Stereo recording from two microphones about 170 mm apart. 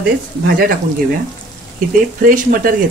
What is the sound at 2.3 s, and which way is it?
Frying, 55° right (ahead or behind).